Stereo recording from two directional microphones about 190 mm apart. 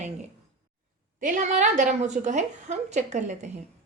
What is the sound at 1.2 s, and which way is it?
A woman's voice, 40° right (ahead or behind).